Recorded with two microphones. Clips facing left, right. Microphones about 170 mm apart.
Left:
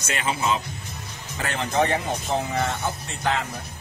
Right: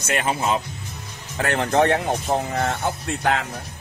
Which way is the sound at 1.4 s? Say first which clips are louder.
Right 5 dB; 60° right (ahead or behind).